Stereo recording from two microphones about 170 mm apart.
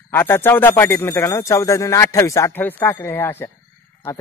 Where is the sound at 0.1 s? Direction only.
15° left (ahead or behind).